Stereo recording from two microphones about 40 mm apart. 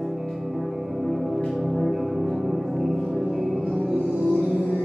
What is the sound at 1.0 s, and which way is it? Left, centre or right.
Music, centre.